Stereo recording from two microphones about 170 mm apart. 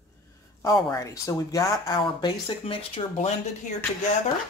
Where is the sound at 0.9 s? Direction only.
20° left (ahead or behind); by 3.3 s 35° left (ahead or behind).